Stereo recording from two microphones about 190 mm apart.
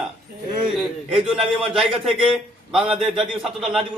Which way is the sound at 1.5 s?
5° right (ahead or behind).